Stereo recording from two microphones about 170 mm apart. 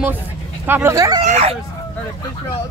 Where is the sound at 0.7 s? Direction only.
15° right (ahead or behind).